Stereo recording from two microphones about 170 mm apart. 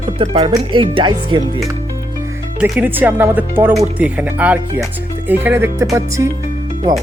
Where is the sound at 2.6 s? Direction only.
10° right (ahead or behind).